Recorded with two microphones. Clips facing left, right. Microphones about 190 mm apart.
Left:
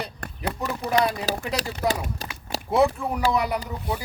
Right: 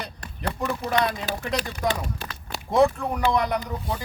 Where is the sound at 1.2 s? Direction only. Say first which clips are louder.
Left 3 dB; 40° left (ahead or behind).